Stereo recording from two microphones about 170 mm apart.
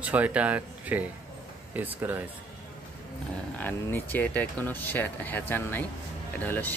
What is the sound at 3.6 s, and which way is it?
Speech, 10° left (ahead or behind).